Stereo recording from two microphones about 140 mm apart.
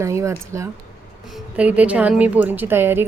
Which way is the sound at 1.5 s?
10° right (ahead or behind).